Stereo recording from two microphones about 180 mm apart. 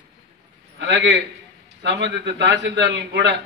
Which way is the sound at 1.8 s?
90° right.